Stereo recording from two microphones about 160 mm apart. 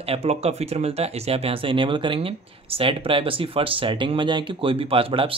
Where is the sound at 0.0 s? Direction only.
40° right (ahead or behind).